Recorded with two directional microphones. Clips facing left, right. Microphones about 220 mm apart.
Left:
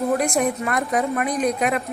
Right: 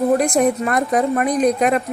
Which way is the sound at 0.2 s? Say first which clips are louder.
Right 5 dB; 40° right (ahead or behind).